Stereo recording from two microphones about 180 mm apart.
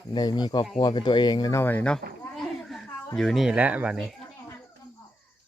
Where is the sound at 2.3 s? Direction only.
Centre (ahead or behind).